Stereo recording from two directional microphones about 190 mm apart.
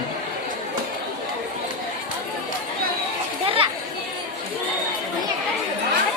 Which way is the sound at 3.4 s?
30° right (ahead or behind).